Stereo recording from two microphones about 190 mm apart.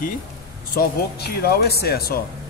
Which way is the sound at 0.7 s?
55° left (ahead or behind).